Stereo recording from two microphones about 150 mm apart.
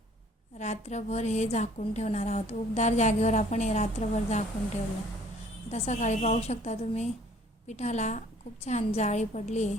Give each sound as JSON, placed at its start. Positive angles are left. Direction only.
{"t": 0.6, "sound": "a woman's voice", "side_deg": 50}
{"t": 5.7, "sound": "a woman's voice", "side_deg": 50}